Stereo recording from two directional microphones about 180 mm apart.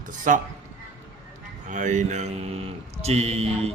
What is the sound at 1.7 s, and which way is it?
Speech, 45° right (ahead or behind).